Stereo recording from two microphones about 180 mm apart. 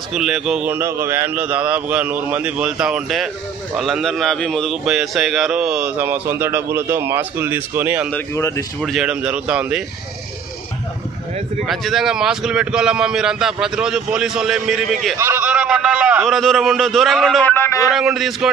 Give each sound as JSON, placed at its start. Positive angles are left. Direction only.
{"t": 0.1, "sound": "a man's voice", "side_deg": 0}
{"t": 8.1, "sound": "speech", "side_deg": 15}
{"t": 8.8, "sound": "a man's voice", "side_deg": -5}
{"t": 11.6, "sound": "a man's voice", "side_deg": 0}
{"t": 15.1, "sound": "a man's voice", "side_deg": -15}
{"t": 17.5, "sound": "speech", "side_deg": 15}
{"t": 17.9, "sound": "a man's voice", "side_deg": 0}